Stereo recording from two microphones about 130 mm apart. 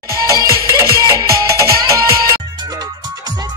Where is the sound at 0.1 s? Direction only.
25° right (ahead or behind).